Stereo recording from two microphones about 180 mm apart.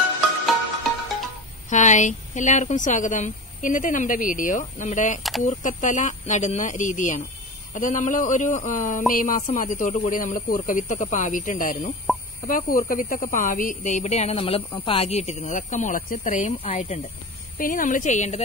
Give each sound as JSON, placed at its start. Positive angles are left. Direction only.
{"t": 1.7, "sound": "speech", "side_deg": 40}
{"t": 16.5, "sound": "speech", "side_deg": 35}
{"t": 17.6, "sound": "speech", "side_deg": 50}